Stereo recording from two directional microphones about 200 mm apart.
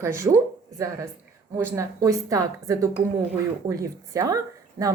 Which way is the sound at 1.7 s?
15° right (ahead or behind).